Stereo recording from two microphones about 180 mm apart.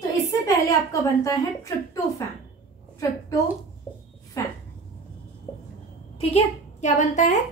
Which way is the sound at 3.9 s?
20° left (ahead or behind).